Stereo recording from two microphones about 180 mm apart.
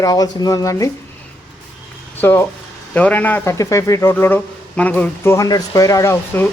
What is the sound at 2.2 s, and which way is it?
Speech, 10° left (ahead or behind).